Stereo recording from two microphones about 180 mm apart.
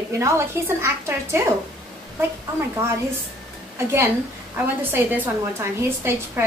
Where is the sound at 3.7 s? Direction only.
15° right (ahead or behind).